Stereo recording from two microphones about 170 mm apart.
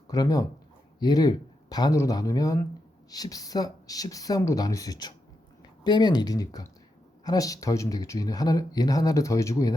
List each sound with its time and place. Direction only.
0.1 s speech: 20° left (ahead or behind)